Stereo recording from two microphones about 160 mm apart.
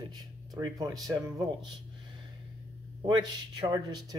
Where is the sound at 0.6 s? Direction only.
25° right (ahead or behind).